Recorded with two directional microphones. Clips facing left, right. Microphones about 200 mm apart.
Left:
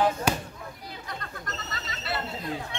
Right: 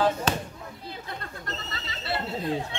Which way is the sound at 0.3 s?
10° left (ahead or behind).